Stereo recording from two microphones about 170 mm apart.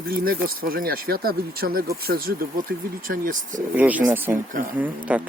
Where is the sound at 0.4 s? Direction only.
60° right (ahead or behind).